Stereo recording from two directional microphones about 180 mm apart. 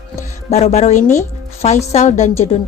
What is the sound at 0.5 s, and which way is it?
Speech, 35° left (ahead or behind).